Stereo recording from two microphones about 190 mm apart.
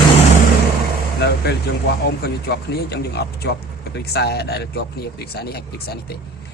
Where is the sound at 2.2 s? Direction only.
55° left (ahead or behind).